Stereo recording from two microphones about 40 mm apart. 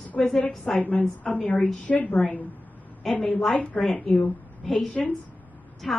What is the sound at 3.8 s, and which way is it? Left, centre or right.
Speech, centre.